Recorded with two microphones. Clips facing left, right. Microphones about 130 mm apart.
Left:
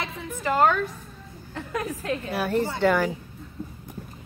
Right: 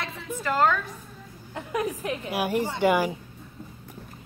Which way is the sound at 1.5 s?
15° right (ahead or behind).